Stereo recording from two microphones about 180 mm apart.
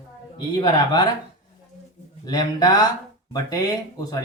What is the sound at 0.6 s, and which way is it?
Speech, 25° left (ahead or behind).